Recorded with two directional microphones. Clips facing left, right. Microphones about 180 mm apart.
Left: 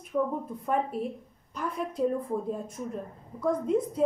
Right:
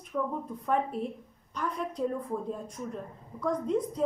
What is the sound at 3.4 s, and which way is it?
Speech, 5° left (ahead or behind).